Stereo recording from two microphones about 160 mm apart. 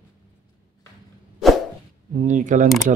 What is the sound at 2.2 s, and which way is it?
Speech, 50° right (ahead or behind).